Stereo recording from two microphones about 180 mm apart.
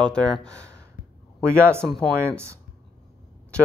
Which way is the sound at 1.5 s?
15° right (ahead or behind).